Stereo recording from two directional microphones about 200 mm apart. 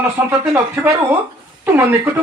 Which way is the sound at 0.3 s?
15° right (ahead or behind).